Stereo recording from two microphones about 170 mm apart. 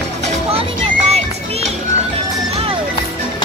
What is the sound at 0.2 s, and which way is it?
Music, 35° right (ahead or behind).